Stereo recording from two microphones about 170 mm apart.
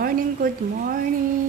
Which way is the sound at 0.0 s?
55° right (ahead or behind).